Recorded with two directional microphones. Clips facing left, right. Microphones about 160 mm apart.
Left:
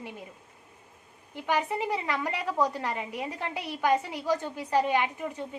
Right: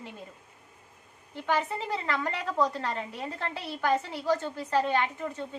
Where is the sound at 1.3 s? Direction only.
10° left (ahead or behind).